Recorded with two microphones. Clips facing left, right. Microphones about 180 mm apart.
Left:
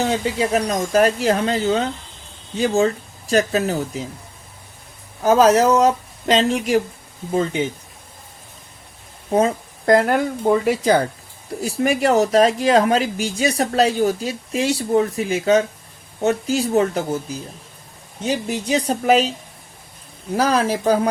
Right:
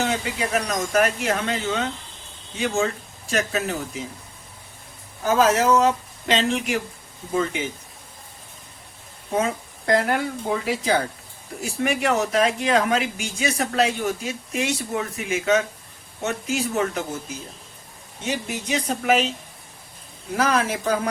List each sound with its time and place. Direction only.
0.0 s speech: 30° left (ahead or behind)
5.2 s speech: 40° left (ahead or behind)
9.3 s a woman's voice: 40° left (ahead or behind)
11.6 s speech: 35° left (ahead or behind)
20.3 s speech: 35° left (ahead or behind)